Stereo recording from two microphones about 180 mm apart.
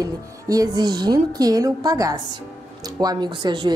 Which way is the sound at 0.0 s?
20° right (ahead or behind).